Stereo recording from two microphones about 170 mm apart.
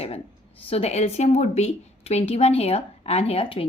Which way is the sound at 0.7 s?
40° left (ahead or behind).